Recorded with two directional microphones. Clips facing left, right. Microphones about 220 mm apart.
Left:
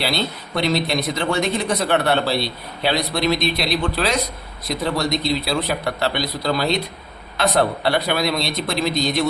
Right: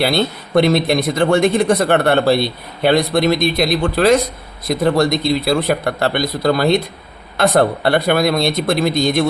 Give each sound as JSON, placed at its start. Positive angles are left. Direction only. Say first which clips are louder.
{"t": 0.0, "sound": "a man's voice", "louder": "right 7 dB", "side_deg": -50}